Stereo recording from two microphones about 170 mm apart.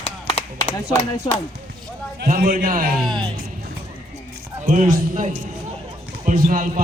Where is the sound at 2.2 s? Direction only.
55° right (ahead or behind).